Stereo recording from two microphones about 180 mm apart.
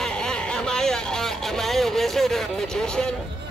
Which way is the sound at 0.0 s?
5° left (ahead or behind).